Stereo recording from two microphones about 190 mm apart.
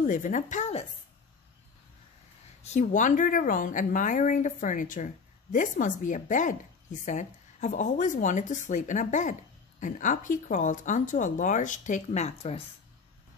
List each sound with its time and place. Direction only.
0.0 s a woman's voice: 40° left (ahead or behind)
2.7 s a woman's voice: 40° left (ahead or behind)